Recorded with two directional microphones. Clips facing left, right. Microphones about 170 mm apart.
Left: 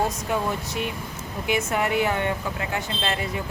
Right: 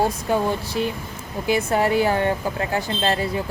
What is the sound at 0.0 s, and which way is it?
A woman's voice, 30° right (ahead or behind).